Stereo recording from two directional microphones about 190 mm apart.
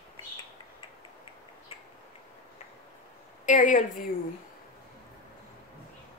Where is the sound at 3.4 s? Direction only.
40° left (ahead or behind).